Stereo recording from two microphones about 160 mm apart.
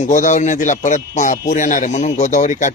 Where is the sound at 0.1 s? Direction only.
50° left (ahead or behind).